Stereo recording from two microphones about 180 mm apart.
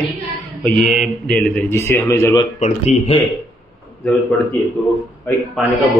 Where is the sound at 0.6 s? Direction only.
Centre (ahead or behind).